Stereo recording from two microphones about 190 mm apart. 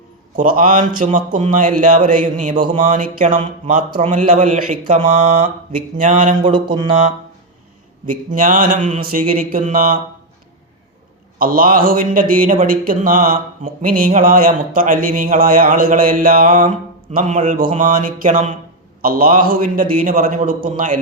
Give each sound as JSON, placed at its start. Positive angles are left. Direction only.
{"t": 0.3, "sound": "speech", "side_deg": -45}
{"t": 6.4, "sound": "mantra", "side_deg": -25}
{"t": 8.0, "sound": "speech", "side_deg": -45}
{"t": 11.3, "sound": "speech", "side_deg": -50}